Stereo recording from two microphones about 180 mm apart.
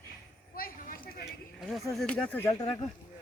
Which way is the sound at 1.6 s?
Centre (ahead or behind).